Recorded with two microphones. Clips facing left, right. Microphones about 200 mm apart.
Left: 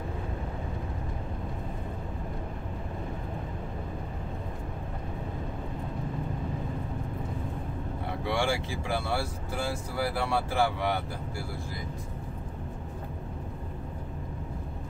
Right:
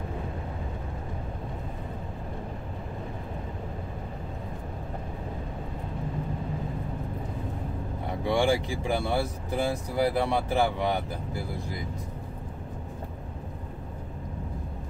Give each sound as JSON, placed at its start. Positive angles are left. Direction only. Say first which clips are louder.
{"t": 8.3, "sound": "speech", "louder": "right 5 dB", "side_deg": -15}